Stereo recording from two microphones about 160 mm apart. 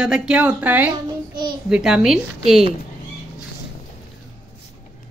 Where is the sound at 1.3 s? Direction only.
30° right (ahead or behind).